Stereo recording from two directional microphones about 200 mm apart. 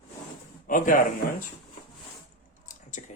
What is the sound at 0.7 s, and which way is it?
Speech, 40° left (ahead or behind).